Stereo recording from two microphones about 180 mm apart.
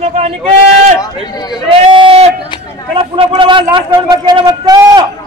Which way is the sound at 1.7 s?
30° right (ahead or behind).